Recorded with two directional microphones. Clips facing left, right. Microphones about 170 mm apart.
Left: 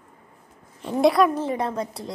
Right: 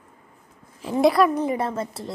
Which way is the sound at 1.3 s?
15° right (ahead or behind).